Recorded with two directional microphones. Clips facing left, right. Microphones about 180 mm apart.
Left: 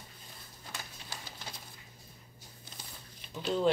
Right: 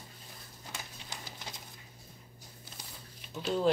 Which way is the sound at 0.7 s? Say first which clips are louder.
Even; 20° right (ahead or behind).